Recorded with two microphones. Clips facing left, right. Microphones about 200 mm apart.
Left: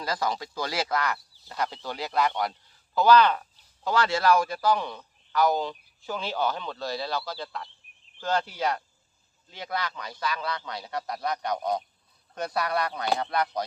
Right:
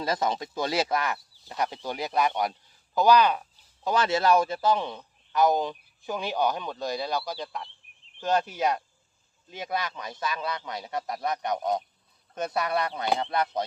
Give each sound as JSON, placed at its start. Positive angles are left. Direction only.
{"t": 0.0, "sound": "a man's voice", "side_deg": -25}